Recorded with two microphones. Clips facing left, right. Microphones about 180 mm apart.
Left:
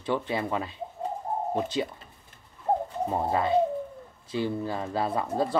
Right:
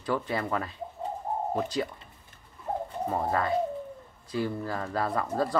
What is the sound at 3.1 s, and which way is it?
Speech, 20° left (ahead or behind).